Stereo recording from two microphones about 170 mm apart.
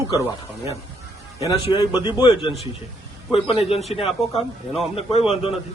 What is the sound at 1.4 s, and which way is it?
A man's voice, 25° left (ahead or behind).